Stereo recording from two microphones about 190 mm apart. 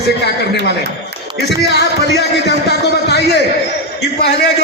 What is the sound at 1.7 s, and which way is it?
A man's voice, 60° left (ahead or behind).